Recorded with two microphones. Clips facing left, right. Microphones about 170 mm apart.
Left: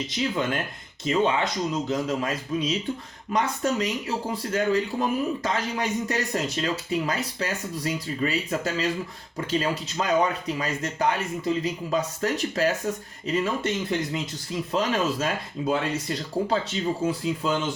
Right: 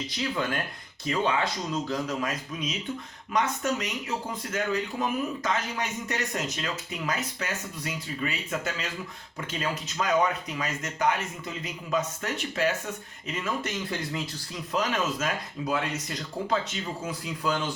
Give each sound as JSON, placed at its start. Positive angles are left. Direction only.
{"t": 0.1, "sound": "a man's voice", "side_deg": 25}